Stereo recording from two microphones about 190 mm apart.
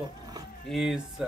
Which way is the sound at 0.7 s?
Centre (ahead or behind).